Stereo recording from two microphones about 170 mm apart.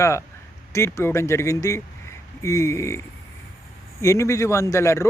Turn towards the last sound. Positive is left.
turn(degrees=15)  # may be behind; listen again after turning